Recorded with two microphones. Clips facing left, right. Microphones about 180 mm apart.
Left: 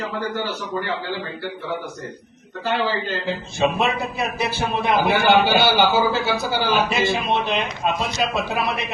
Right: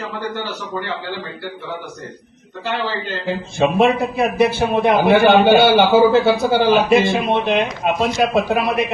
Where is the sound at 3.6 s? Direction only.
55° right (ahead or behind).